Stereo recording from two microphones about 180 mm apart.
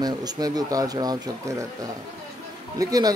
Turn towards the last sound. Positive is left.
turn(degrees=-20)  # may be behind; listen again after turning